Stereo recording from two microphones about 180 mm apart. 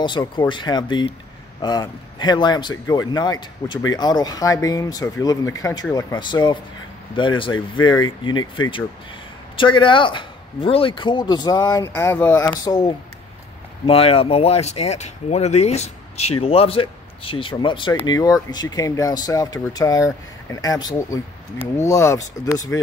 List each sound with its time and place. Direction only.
0.0 s speech: 25° left (ahead or behind); by 12.5 s 10° left (ahead or behind)
12.5 s speech: 20° left (ahead or behind)
13.8 s speech: 30° left (ahead or behind); by 22.8 s 15° left (ahead or behind)